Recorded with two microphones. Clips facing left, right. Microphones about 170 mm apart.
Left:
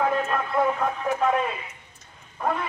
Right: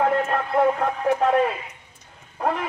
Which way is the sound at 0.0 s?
50° right (ahead or behind).